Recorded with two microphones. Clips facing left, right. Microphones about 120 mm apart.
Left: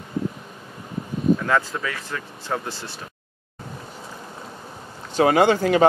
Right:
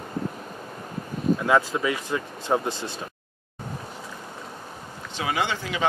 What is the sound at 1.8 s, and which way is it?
Speech, 15° right (ahead or behind).